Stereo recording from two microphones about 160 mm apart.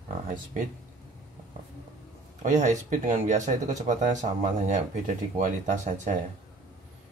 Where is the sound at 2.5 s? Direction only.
50° right (ahead or behind).